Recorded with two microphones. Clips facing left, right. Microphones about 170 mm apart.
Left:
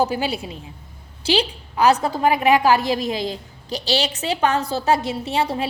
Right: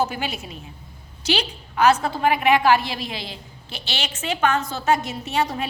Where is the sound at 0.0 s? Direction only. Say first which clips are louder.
Left 4 dB; 35° left (ahead or behind).